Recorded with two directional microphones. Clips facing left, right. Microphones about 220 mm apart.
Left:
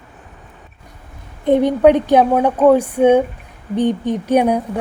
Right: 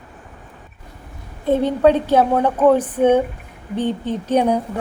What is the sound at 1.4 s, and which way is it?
A woman's voice, 15° left (ahead or behind).